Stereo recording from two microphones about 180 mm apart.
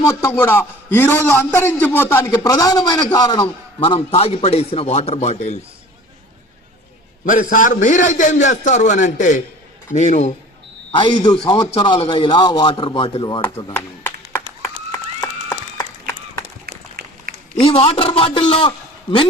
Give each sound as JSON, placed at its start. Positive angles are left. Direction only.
{"t": 0.0, "sound": "a man's voice", "side_deg": 15}
{"t": 7.3, "sound": "a man's voice", "side_deg": 45}
{"t": 10.9, "sound": "a man's voice", "side_deg": 25}
{"t": 14.6, "sound": "a sound", "side_deg": 15}
{"t": 16.6, "sound": "a sound", "side_deg": -60}
{"t": 17.6, "sound": "a man's voice", "side_deg": 30}